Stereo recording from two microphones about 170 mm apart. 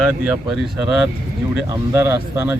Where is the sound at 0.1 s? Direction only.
10° right (ahead or behind).